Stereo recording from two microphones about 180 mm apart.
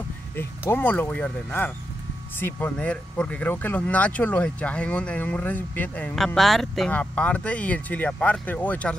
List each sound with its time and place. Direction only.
0.4 s speech: 10° left (ahead or behind)